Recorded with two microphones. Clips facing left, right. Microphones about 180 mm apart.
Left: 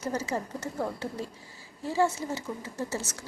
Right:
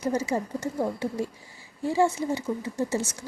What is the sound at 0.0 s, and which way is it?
A woman's voice, 10° right (ahead or behind).